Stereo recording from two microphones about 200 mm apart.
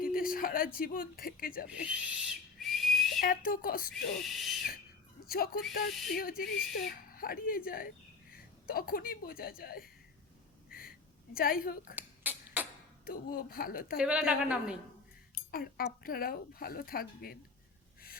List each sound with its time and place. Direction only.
0.0 s speech: 45° left (ahead or behind)
1.8 s a woman's voice: 5° right (ahead or behind)
2.6 s whistle: centre (ahead or behind)
3.2 s speech: 45° left (ahead or behind)
4.3 s speech: centre (ahead or behind)
5.2 s speech: 50° left (ahead or behind)
10.7 s a sound: 45° left (ahead or behind)
11.3 s speech: 45° left (ahead or behind)
11.9 s beatboxing: 10° right (ahead or behind)
13.1 s speech: 45° left (ahead or behind)
13.9 s a woman's voice: 5° right (ahead or behind)
15.5 s speech: 50° left (ahead or behind)